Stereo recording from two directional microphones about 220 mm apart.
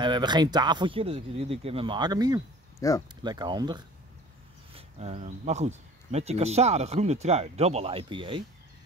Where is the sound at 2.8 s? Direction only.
15° left (ahead or behind).